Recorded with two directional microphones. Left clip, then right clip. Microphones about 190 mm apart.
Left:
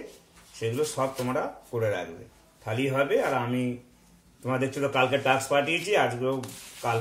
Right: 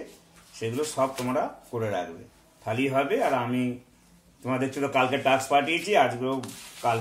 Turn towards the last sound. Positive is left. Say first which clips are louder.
# right 3 dB
turn(degrees=0)  # may be behind; listen again after turning